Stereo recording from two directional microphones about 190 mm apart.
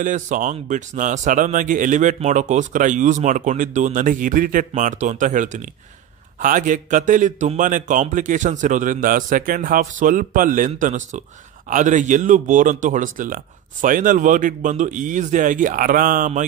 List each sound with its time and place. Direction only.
0.0 s a man's voice: 40° right (ahead or behind)